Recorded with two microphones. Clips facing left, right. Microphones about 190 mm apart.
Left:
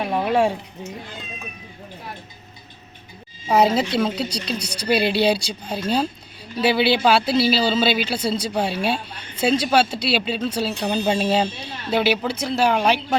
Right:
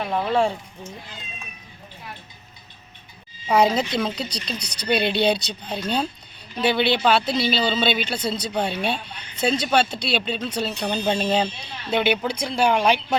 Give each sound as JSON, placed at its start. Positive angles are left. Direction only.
{"t": 0.3, "sound": "speech", "side_deg": 15}
{"t": 3.5, "sound": "speech", "side_deg": 5}